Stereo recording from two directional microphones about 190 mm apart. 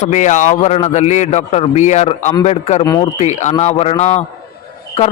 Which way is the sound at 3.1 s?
35° left (ahead or behind).